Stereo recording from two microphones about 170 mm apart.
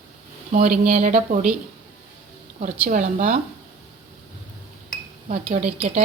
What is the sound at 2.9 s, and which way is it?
Speech, 50° right (ahead or behind).